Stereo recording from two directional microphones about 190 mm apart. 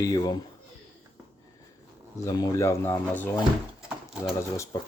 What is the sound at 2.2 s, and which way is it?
Speech, 15° left (ahead or behind).